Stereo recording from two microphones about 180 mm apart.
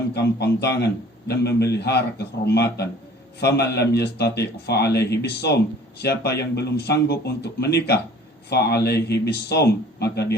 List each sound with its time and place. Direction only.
0.1 s a man's voice: 65° left (ahead or behind)